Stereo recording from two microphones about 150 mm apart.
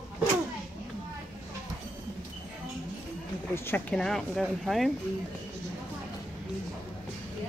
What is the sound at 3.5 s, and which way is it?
Speech, 15° left (ahead or behind).